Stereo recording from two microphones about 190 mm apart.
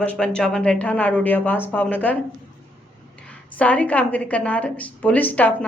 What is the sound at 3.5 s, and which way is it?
A woman's voice, 5° left (ahead or behind).